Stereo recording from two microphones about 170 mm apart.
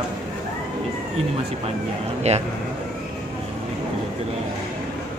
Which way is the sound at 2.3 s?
40° right (ahead or behind).